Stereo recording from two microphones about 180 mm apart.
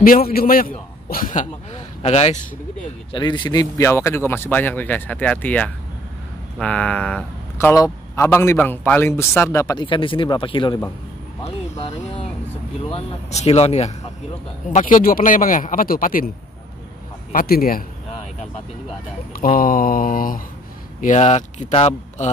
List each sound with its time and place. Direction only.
0.0 s a man's voice: 55° left (ahead or behind); by 2.3 s 35° left (ahead or behind)
3.1 s a man's voice: 25° left (ahead or behind); by 7.2 s 5° left (ahead or behind)
7.5 s a man's voice: 15° left (ahead or behind)
11.8 s speech: 35° left (ahead or behind)
14.7 s a man's voice: 50° left (ahead or behind)
17.3 s a man's voice: 55° left (ahead or behind)
19.3 s a man's voice: 50° left (ahead or behind)
21.0 s speech: 40° left (ahead or behind)